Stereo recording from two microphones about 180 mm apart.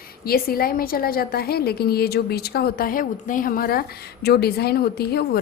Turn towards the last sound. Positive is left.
turn(degrees=60)  # may be behind; listen again after turning